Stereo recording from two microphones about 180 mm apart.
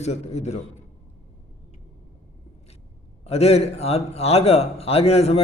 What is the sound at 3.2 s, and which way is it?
A man's voice, 35° left (ahead or behind).